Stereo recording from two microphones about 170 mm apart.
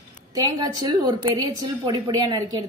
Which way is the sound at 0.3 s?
20° right (ahead or behind).